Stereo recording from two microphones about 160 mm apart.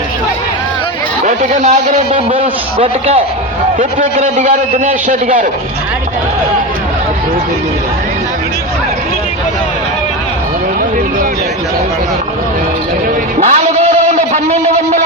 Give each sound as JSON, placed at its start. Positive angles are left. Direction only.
{"t": 1.2, "sound": "speech", "side_deg": -50}
{"t": 2.1, "sound": "a man's voice", "side_deg": -35}
{"t": 3.8, "sound": "a man's voice", "side_deg": -50}
{"t": 13.4, "sound": "guitar", "side_deg": -45}